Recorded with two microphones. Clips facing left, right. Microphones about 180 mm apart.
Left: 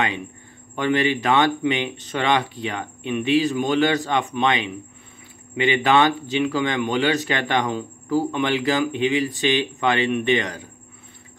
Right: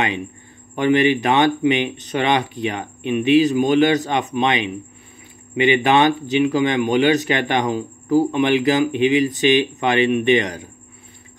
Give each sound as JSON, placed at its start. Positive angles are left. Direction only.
{"t": 0.7, "sound": "speech", "side_deg": -20}